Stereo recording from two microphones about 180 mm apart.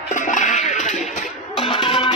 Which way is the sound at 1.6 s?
30° left (ahead or behind).